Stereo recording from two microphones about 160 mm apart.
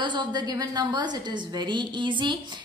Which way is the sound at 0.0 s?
30° right (ahead or behind).